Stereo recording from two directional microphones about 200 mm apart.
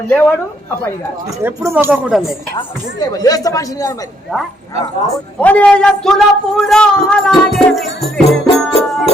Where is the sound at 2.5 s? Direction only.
20° left (ahead or behind).